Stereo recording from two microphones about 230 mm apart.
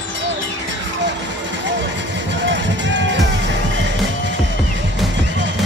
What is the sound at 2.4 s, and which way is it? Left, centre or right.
Music, right.